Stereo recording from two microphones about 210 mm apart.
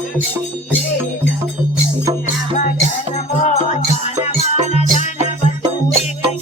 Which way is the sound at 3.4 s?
30° left (ahead or behind).